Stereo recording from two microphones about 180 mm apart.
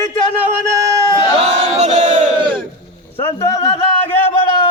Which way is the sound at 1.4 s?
40° right (ahead or behind).